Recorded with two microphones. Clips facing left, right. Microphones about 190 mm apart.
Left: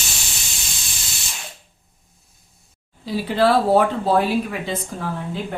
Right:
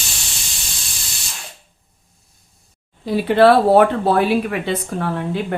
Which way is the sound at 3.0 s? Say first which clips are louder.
Right 6 dB; 60° right (ahead or behind).